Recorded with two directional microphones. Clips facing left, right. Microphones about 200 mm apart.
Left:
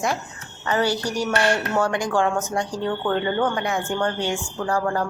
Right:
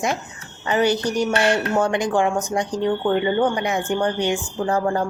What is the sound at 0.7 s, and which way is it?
Speech, 20° right (ahead or behind).